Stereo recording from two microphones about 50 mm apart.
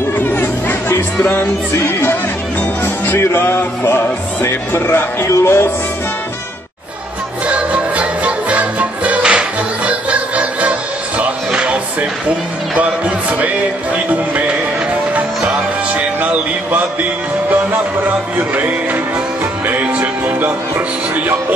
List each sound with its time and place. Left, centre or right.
0.2 s chatter: left
1.1 s speech: centre
3.3 s a sound: left
4.7 s speech: left
7.4 s music: right
15.1 s music: right
19.7 s music: right